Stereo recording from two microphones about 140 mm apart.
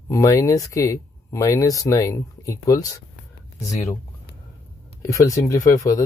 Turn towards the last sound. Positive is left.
turn(degrees=25)  # may be behind; listen again after turning